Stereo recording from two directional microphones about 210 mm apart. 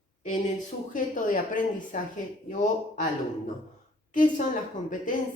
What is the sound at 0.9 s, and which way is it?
Speech, 40° left (ahead or behind).